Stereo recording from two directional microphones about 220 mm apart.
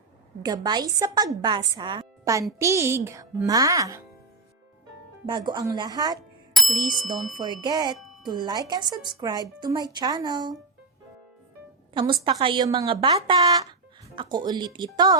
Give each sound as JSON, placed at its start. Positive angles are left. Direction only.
{"t": 0.4, "sound": "speech", "side_deg": -15}
{"t": 5.2, "sound": "speech", "side_deg": -20}
{"t": 6.5, "sound": "bicycle bell", "side_deg": 0}
{"t": 7.3, "sound": "speech", "side_deg": -20}
{"t": 7.9, "sound": "music", "side_deg": 0}
{"t": 8.2, "sound": "speech", "side_deg": -20}
{"t": 11.9, "sound": "speech", "side_deg": -25}